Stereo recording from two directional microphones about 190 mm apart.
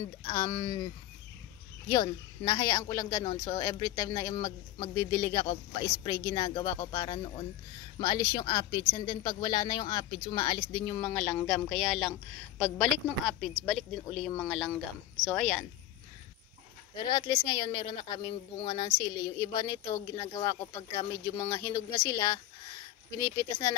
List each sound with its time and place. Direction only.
0.0 s speech: 20° left (ahead or behind)
1.9 s speech: 20° left (ahead or behind); by 15.6 s 5° left (ahead or behind)
16.9 s speech: 25° left (ahead or behind)